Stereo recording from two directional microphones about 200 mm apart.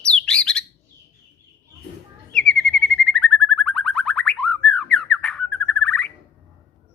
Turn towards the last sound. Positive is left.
turn(degrees=5)  # may be behind; listen again after turning